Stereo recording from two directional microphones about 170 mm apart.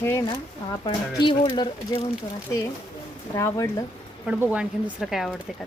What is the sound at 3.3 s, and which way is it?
Speech, 20° left (ahead or behind).